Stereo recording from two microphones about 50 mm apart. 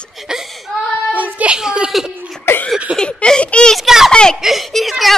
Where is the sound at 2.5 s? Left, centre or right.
Left.